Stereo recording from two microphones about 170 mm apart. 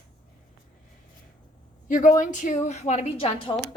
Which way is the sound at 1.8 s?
50° left (ahead or behind).